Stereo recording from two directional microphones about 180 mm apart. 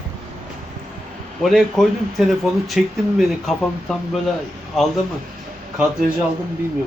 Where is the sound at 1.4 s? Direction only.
Centre (ahead or behind).